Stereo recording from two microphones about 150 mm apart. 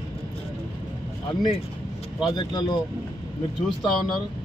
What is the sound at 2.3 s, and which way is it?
Speech, 30° left (ahead or behind).